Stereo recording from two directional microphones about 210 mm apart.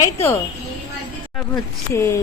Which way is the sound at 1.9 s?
10° left (ahead or behind).